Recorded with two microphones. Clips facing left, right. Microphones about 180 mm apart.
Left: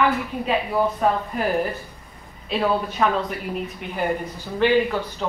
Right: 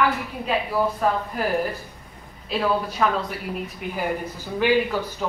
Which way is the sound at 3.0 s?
Centre (ahead or behind).